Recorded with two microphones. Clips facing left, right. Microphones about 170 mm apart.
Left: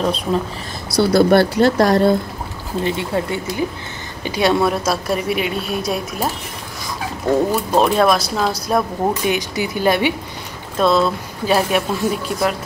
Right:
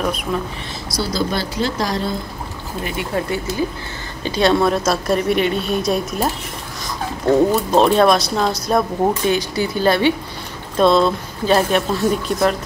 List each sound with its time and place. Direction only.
0.0 s speech: 30° left (ahead or behind)
0.9 s speech: 60° left (ahead or behind)
2.8 s speech: 25° left (ahead or behind)
4.2 s a woman's voice: 10° left (ahead or behind)
7.7 s a woman's voice: 5° left (ahead or behind)